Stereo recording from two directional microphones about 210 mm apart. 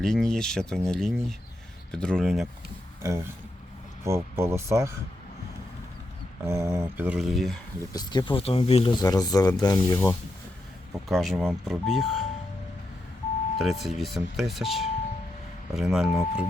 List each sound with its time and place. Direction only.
0.0 s speech: 5° left (ahead or behind)
3.0 s music: 15° right (ahead or behind)
4.0 s a sound: 10° right (ahead or behind)
6.4 s a sound: 15° right (ahead or behind)
7.9 s speech: 20° left (ahead or behind); by 12.2 s centre (ahead or behind)
13.6 s speech: centre (ahead or behind)